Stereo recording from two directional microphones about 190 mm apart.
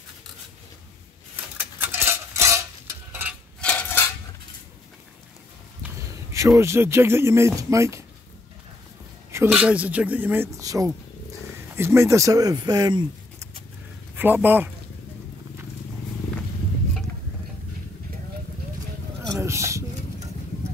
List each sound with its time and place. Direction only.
1.6 s stir: 10° right (ahead or behind)
3.6 s dishes: 10° left (ahead or behind)
5.8 s speech: 15° right (ahead or behind)
9.3 s speech: 10° right (ahead or behind)
14.1 s speech: 10° right (ahead or behind)
19.2 s a sound: 15° right (ahead or behind)